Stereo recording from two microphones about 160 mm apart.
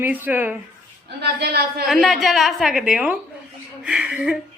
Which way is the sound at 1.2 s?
80° right.